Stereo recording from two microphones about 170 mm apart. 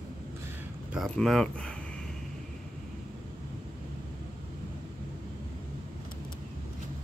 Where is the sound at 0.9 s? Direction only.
Centre (ahead or behind).